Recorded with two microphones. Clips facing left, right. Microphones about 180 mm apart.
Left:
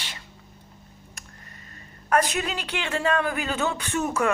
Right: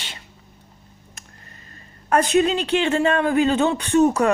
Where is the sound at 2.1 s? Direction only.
25° right (ahead or behind).